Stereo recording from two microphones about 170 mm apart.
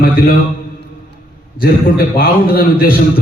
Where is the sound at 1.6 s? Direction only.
60° left (ahead or behind).